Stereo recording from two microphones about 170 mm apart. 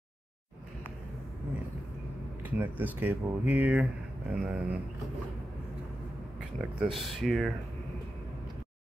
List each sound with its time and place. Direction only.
2.4 s speech: 10° right (ahead or behind)
6.8 s speech: centre (ahead or behind)